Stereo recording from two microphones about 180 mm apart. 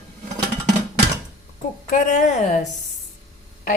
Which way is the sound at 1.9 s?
45° left (ahead or behind).